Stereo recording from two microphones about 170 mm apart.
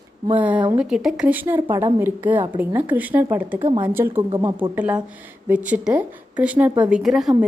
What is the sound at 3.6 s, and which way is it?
Speech, 30° right (ahead or behind).